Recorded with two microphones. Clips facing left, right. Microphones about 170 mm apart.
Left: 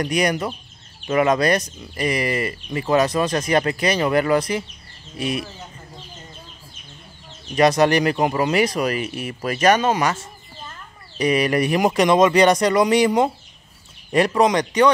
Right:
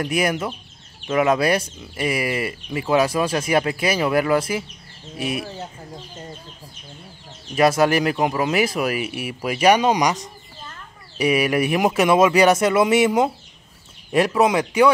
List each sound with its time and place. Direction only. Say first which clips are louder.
0.0 s speech: left 1 dB; 5° right (ahead or behind)
7.5 s speech: left 1 dB; 5° right (ahead or behind)